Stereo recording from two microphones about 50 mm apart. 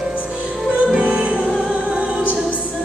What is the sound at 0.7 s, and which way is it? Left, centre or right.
Music, right.